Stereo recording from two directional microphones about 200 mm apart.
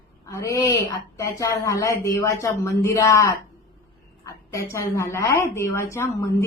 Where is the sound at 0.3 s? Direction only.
15° left (ahead or behind).